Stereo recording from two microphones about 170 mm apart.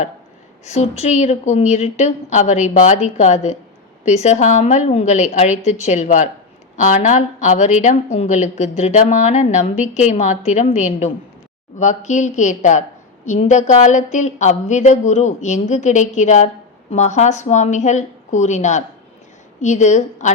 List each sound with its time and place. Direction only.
0.6 s a woman's voice: 40° left (ahead or behind)